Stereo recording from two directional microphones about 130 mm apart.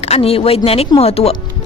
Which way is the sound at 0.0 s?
50° left (ahead or behind).